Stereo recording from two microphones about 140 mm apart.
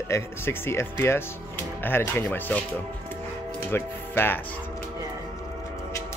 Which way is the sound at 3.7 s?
15° left (ahead or behind).